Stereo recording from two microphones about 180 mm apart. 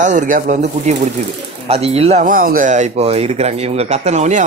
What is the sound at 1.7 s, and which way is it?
A man's voice, 35° right (ahead or behind).